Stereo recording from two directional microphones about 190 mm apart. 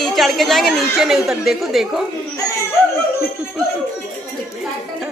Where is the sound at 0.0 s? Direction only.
Centre (ahead or behind).